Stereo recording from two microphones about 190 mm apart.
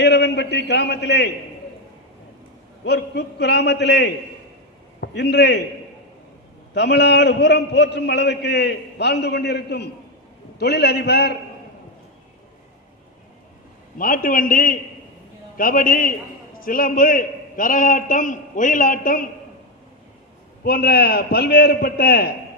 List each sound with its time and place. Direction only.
0.0 s a man's voice: 65° left (ahead or behind)
2.8 s a man's voice: 60° left (ahead or behind)
6.7 s a man's voice: 60° left (ahead or behind)
14.0 s a man's voice: 45° left (ahead or behind)
20.7 s a man's voice: 55° left (ahead or behind)